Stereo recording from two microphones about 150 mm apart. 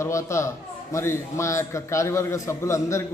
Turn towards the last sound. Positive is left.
turn(degrees=20)  # may be behind; listen again after turning